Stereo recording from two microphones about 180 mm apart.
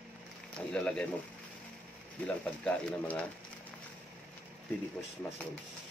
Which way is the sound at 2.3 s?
5° left (ahead or behind).